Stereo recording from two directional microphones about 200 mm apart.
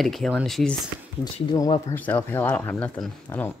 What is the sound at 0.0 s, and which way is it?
Speech, centre (ahead or behind).